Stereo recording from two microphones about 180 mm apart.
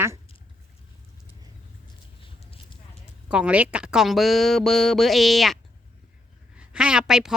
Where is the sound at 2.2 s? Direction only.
30° left (ahead or behind).